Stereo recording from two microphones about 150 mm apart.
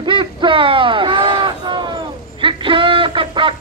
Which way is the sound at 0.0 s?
30° right (ahead or behind).